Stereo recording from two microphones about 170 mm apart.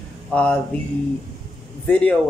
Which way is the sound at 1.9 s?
5° left (ahead or behind).